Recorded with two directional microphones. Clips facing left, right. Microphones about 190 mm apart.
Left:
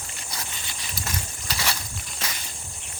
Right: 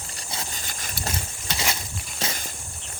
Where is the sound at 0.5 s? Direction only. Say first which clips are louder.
Right 2 dB; 45° right (ahead or behind).